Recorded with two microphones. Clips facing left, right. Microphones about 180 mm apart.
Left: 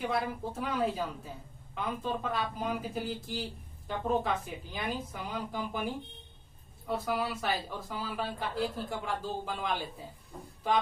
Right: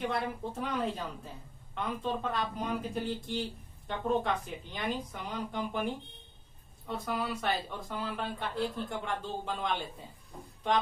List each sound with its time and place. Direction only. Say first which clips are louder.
0.0 s speech: left 1 dB; 5° left (ahead or behind)